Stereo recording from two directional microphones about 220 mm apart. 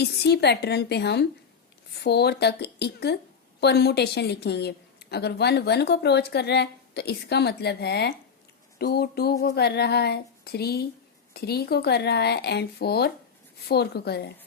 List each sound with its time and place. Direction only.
0.0 s a woman's voice: 50° left (ahead or behind)